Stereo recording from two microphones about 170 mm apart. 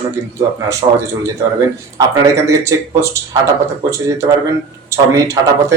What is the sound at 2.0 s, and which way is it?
Speech, 20° right (ahead or behind).